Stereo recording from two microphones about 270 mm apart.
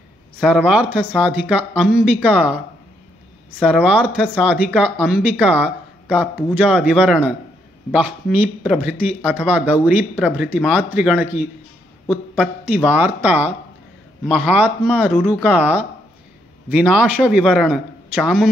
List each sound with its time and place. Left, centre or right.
0.4 s speech: centre
12.9 s speech: centre